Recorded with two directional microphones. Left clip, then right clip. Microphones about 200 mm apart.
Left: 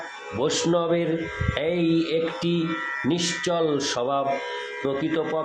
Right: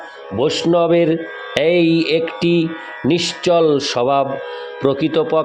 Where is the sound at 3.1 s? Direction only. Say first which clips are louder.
Right 11 dB; 35° right (ahead or behind).